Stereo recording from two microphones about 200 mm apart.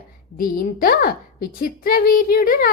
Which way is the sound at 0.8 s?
45° left (ahead or behind).